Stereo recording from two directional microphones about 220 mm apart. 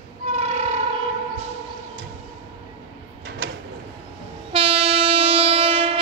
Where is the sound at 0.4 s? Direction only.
25° right (ahead or behind).